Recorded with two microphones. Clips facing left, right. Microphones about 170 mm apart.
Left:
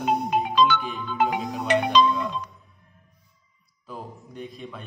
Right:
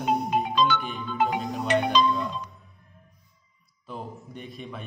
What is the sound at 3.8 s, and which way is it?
Speech, centre (ahead or behind).